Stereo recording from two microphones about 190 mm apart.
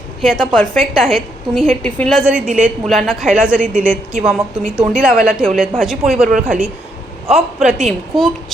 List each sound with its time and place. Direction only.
0.2 s a woman's voice: centre (ahead or behind)